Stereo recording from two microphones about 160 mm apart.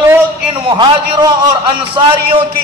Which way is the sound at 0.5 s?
30° right (ahead or behind).